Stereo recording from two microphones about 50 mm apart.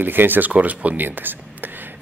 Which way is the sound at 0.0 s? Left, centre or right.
Right.